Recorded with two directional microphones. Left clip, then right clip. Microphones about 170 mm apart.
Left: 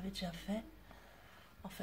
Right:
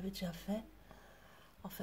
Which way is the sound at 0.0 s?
35° right (ahead or behind).